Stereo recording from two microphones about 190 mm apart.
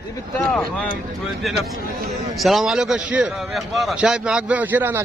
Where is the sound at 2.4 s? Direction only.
Centre (ahead or behind).